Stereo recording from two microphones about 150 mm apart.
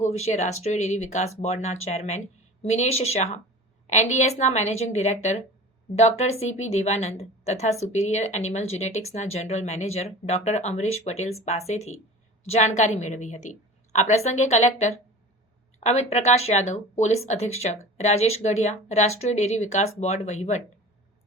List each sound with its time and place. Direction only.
0.0 s a woman's voice: 45° left (ahead or behind)